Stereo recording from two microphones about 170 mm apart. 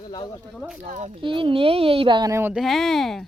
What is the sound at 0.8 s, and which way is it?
Speech, 40° right (ahead or behind).